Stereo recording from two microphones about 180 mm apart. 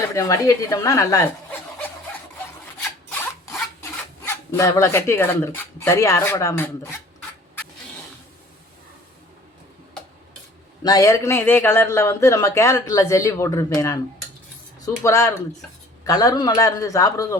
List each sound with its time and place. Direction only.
0.1 s a woman's voice: 20° left (ahead or behind)
3.1 s filing: 5° left (ahead or behind)
4.5 s a man's voice: 15° left (ahead or behind)
10.8 s a man's voice: 20° left (ahead or behind)